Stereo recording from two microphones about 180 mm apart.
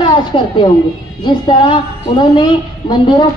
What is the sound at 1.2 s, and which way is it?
A woman's voice, 25° left (ahead or behind).